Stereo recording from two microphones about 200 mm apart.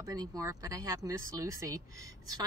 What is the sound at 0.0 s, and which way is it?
Speech, 20° right (ahead or behind).